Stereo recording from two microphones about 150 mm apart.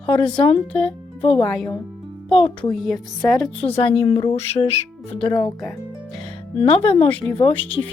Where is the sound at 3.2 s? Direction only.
25° left (ahead or behind).